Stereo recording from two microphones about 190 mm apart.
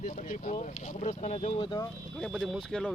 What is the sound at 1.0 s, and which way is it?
Speech, 35° left (ahead or behind).